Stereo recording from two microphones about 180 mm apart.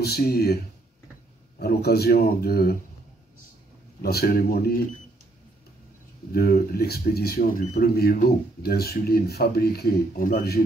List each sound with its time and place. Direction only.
0.0 s speech: 60° left (ahead or behind)
1.6 s speech: 60° left (ahead or behind)
4.0 s speech: 60° left (ahead or behind)
6.3 s speech: 60° left (ahead or behind)